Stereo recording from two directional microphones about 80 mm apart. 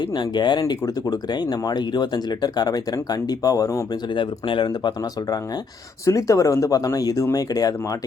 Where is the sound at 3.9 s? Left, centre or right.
Left.